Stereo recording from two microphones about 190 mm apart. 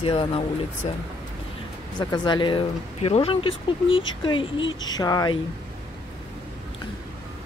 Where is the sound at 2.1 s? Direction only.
25° left (ahead or behind).